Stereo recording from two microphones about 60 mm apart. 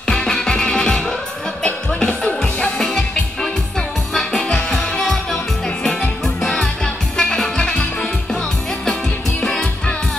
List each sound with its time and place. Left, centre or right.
0.0 s music: centre
4.1 s music: centre
9.4 s music: centre